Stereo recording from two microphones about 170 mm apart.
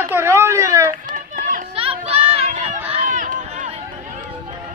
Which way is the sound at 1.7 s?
35° right (ahead or behind).